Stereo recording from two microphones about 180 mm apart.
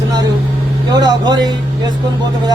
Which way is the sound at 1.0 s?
25° right (ahead or behind).